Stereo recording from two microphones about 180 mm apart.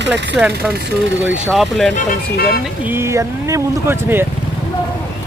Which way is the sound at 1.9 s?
55° left (ahead or behind).